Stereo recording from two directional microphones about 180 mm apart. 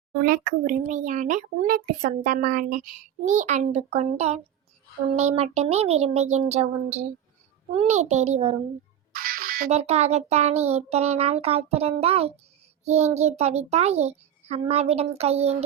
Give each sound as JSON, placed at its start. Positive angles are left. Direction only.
{"t": 0.3, "sound": "a child's voice", "side_deg": -50}
{"t": 9.1, "sound": "a sound", "side_deg": -55}
{"t": 9.6, "sound": "a child's voice", "side_deg": -35}